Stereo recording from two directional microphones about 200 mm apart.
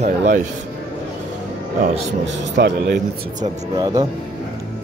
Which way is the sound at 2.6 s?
55° right (ahead or behind).